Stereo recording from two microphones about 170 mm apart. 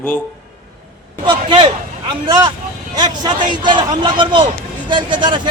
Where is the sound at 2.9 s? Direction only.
25° right (ahead or behind).